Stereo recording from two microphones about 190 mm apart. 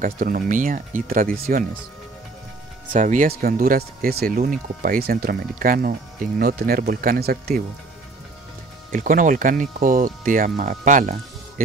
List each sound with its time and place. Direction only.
0.0 s speech: 45° right (ahead or behind)
2.9 s speech: 45° right (ahead or behind)
8.9 s speech: 45° right (ahead or behind)